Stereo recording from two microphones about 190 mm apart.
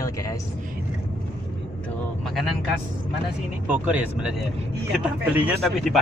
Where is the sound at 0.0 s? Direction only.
15° left (ahead or behind).